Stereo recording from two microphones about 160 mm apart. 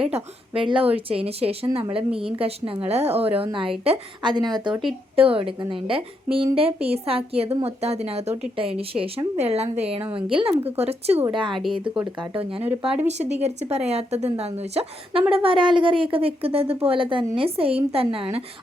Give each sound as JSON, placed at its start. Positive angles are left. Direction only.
{"t": 0.7, "sound": "a woman's voice", "side_deg": -35}
{"t": 12.4, "sound": "speech", "side_deg": -10}
{"t": 13.1, "sound": "a woman's voice", "side_deg": -45}